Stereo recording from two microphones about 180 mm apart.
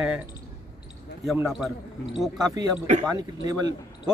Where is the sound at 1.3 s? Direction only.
Centre (ahead or behind).